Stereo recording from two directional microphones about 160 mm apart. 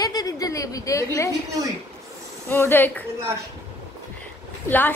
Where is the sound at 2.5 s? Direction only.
15° left (ahead or behind).